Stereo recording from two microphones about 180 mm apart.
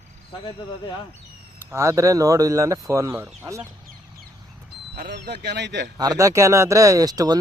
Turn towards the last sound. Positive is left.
turn(degrees=-20)  # may be behind; listen again after turning